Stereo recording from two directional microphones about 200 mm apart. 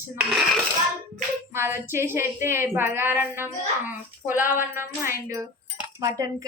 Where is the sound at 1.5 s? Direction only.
10° right (ahead or behind).